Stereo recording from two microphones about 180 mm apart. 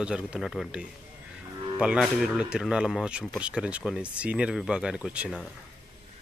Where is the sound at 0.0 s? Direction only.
5° right (ahead or behind).